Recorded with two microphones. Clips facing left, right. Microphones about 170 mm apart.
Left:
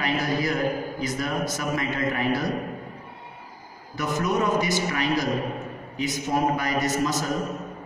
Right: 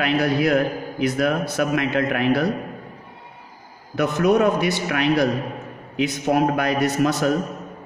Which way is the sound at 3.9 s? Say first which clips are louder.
Right 7 dB; 65° right (ahead or behind).